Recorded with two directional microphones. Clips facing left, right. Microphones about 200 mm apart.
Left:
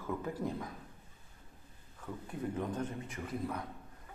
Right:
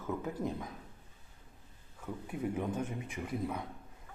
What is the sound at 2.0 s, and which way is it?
A man's voice, 10° right (ahead or behind).